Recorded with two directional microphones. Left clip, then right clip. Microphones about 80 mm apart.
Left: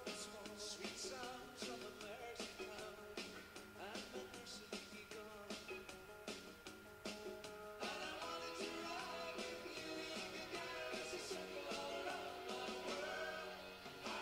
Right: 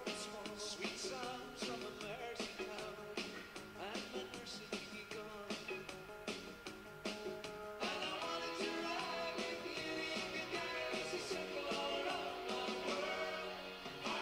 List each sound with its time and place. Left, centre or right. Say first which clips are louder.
0.7 s music: right 5 dB; right
3.8 s music: right 5 dB; right
7.8 s music: right 6 dB; right